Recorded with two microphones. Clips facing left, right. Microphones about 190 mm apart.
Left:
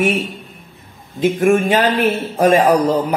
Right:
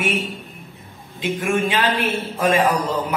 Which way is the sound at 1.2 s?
45° left (ahead or behind).